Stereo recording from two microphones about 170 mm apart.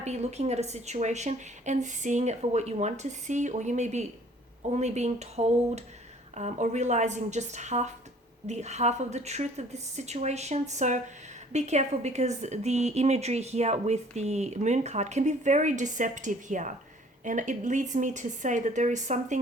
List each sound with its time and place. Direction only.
0.0 s a woman's voice: 40° right (ahead or behind)